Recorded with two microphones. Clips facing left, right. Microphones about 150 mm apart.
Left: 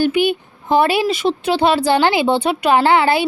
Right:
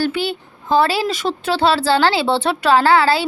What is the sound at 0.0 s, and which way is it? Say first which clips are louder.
A woman's voice: left 5 dB; 15° left (ahead or behind).